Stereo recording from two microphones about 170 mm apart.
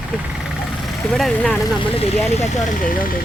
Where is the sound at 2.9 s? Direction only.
55° left (ahead or behind).